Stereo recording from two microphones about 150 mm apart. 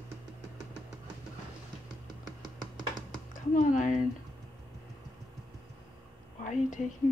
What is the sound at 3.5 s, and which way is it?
Speech, 60° left (ahead or behind).